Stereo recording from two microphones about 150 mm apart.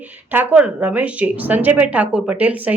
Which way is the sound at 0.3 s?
10° right (ahead or behind).